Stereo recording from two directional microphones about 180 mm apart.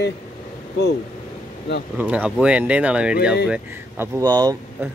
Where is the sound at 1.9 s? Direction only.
10° right (ahead or behind).